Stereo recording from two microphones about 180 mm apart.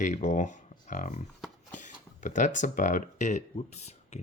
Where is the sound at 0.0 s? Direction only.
40° left (ahead or behind).